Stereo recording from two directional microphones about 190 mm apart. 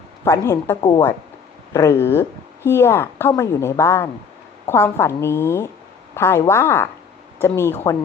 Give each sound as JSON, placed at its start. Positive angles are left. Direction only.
{"t": 0.3, "sound": "a woman's voice", "side_deg": 15}